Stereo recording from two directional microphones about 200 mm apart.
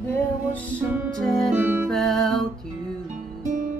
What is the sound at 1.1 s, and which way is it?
Music, centre (ahead or behind).